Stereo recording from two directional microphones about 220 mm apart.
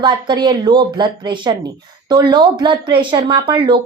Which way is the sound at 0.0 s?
20° right (ahead or behind).